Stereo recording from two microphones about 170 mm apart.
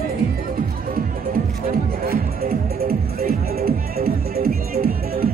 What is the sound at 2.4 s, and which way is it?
Music, 60° right (ahead or behind).